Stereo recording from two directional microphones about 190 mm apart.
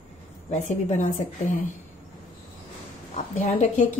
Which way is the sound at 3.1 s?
40° left (ahead or behind).